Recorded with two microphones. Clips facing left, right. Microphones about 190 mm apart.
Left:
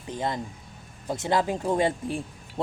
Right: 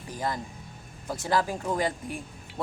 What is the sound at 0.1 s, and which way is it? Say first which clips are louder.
Speech: left 2 dB; 25° left (ahead or behind).